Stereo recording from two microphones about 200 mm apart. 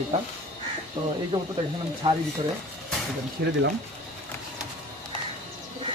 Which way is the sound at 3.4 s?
50° right (ahead or behind).